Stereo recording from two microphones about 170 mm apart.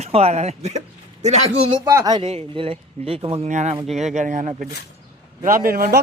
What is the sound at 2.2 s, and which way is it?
A man's voice, 35° right (ahead or behind).